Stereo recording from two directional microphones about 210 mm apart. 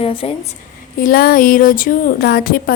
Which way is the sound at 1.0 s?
45° left (ahead or behind).